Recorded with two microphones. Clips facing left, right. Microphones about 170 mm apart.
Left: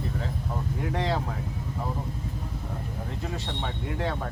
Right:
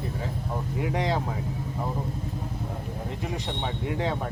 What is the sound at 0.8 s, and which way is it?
Speech, 15° right (ahead or behind).